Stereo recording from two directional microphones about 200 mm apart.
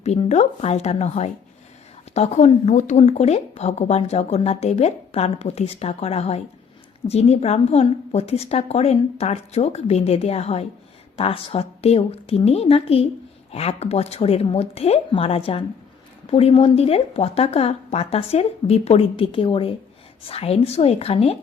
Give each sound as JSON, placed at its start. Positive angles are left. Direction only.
{"t": 0.0, "sound": "a woman's voice", "side_deg": 35}